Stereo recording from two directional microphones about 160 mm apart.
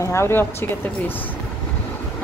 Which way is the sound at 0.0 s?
15° left (ahead or behind).